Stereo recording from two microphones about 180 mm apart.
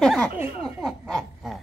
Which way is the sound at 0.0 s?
5° left (ahead or behind).